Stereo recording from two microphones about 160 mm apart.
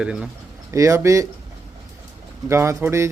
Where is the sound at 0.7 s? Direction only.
20° right (ahead or behind).